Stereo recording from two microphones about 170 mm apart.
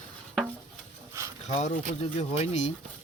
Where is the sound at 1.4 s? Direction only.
40° left (ahead or behind).